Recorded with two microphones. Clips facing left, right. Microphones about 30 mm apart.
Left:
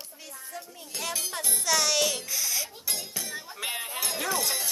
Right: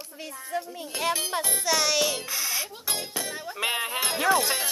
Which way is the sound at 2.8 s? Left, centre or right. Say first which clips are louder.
Right 4 dB; right.